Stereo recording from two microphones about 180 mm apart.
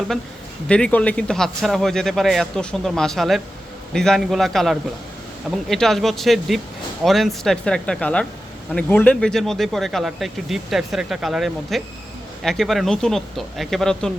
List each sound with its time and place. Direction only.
0.7 s speech: 5° left (ahead or behind)